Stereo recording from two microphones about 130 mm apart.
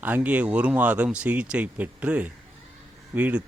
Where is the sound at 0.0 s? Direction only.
10° right (ahead or behind).